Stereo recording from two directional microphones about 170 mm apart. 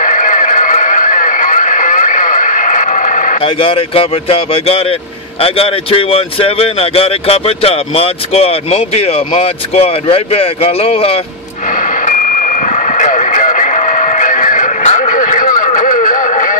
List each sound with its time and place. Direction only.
0.0 s neigh: 50° left (ahead or behind)
3.3 s speech: 30° left (ahead or behind)
11.7 s vehicle: 50° left (ahead or behind)